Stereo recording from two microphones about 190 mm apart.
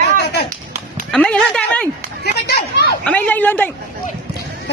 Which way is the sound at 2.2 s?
55° left (ahead or behind).